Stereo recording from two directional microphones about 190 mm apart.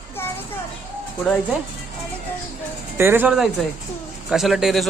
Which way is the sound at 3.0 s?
10° right (ahead or behind).